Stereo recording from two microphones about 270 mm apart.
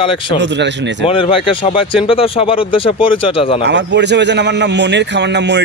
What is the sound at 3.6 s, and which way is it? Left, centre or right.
A man's voice, right.